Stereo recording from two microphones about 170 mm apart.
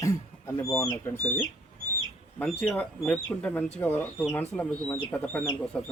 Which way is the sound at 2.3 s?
5° left (ahead or behind).